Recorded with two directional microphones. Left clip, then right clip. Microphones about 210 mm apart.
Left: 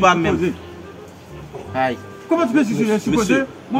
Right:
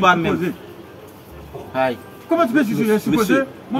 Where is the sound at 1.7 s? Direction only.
10° left (ahead or behind).